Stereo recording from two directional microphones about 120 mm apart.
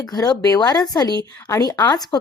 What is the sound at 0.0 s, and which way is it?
A woman's voice, 30° left (ahead or behind).